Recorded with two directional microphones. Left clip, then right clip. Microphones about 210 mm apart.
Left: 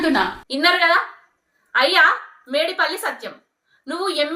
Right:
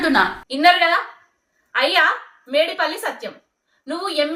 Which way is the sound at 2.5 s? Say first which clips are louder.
Right 1 dB; 25° right (ahead or behind).